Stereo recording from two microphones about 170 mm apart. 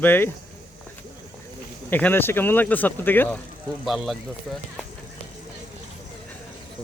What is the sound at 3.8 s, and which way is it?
Speech, centre (ahead or behind).